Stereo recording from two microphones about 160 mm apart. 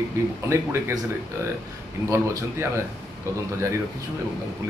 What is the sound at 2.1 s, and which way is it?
Speech, 20° right (ahead or behind).